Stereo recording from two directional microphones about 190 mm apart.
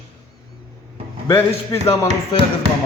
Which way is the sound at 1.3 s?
15° left (ahead or behind).